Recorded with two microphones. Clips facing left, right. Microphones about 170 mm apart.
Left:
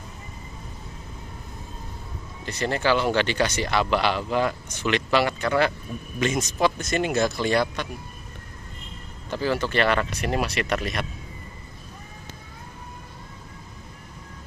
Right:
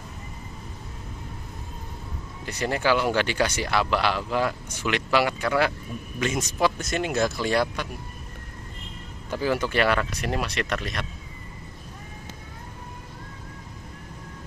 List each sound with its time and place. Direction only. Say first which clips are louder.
2.4 s speech: left 1 dB; 10° right (ahead or behind)
9.3 s speech: even; 10° right (ahead or behind); by 11.1 s 5° left (ahead or behind)